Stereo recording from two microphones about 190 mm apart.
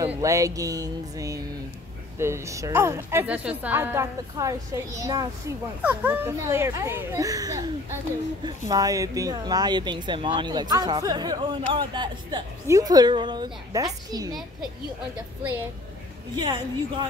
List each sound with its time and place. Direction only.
0.0 s a woman's voice: 15° right (ahead or behind)
16.3 s speech: 20° right (ahead or behind)